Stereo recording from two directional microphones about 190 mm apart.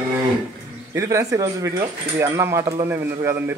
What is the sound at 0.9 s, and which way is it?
A man's voice, 15° right (ahead or behind).